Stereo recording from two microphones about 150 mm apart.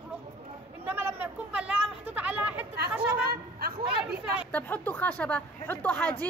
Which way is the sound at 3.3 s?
90° right.